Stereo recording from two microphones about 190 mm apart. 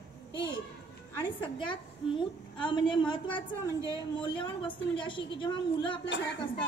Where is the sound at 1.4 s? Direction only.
25° left (ahead or behind).